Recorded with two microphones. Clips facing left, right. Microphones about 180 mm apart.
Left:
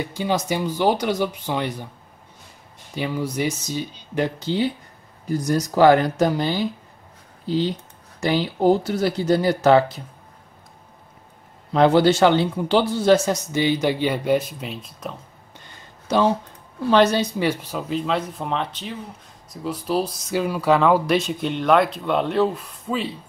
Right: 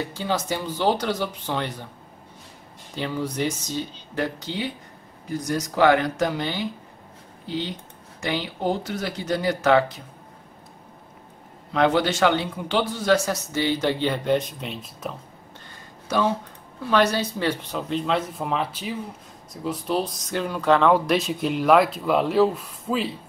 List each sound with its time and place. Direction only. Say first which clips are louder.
0.0 s a man's voice: left 3 dB; 15° left (ahead or behind)
3.0 s a man's voice: left 2 dB; 10° left (ahead or behind)
5.3 s speech: left 5 dB; 35° left (ahead or behind)
11.7 s a man's voice: left 5 dB; 35° left (ahead or behind); by 15.1 s centre (ahead or behind)
16.8 s speech: left 4 dB; 25° left (ahead or behind); by 23.1 s centre (ahead or behind)